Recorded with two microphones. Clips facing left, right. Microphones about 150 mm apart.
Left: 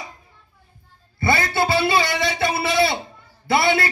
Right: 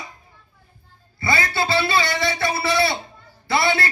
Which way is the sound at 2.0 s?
20° left (ahead or behind).